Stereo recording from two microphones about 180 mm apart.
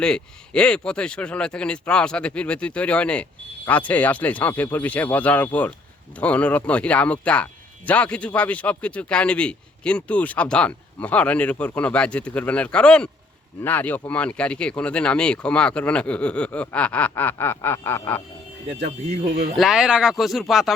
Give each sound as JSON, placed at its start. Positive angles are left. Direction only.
{"t": 0.0, "sound": "speech", "side_deg": 5}
{"t": 18.7, "sound": "speech", "side_deg": -35}
{"t": 19.5, "sound": "speech", "side_deg": 0}